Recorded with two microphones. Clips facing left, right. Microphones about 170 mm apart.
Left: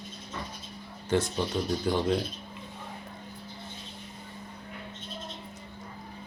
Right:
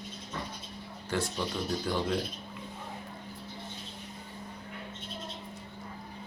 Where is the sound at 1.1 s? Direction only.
20° left (ahead or behind).